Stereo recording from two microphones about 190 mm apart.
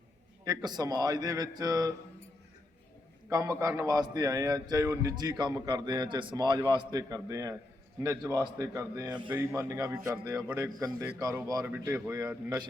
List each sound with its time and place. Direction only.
0.4 s a man's voice: 20° right (ahead or behind)
3.2 s a man's voice: 15° right (ahead or behind)